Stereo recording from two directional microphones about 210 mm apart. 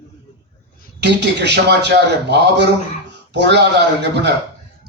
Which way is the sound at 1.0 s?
55° right (ahead or behind).